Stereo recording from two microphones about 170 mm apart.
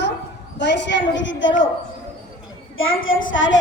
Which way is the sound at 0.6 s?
90° left.